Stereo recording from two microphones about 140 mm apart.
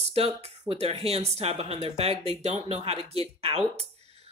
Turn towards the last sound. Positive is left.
turn(degrees=-45)  # may be behind; listen again after turning